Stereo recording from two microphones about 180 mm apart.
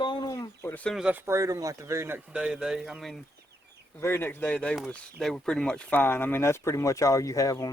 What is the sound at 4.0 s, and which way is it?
Speech, 15° left (ahead or behind).